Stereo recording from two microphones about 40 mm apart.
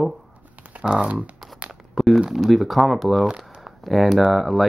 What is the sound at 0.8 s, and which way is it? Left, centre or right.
Speech, right.